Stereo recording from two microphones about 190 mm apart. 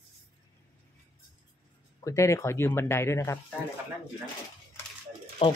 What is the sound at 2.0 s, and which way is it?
Speech, 15° left (ahead or behind).